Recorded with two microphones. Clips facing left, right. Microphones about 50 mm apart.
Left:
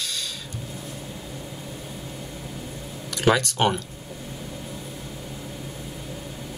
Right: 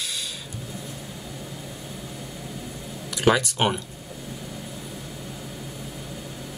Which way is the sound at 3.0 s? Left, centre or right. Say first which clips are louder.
Even; centre.